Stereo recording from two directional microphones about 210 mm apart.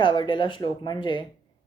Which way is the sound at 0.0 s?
25° left (ahead or behind).